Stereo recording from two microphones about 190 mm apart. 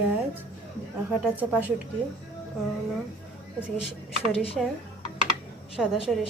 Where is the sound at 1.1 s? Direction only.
10° right (ahead or behind).